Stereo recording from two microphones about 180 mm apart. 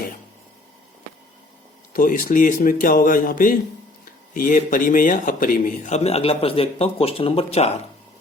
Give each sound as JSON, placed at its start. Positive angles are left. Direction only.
{"t": 1.9, "sound": "speech", "side_deg": 50}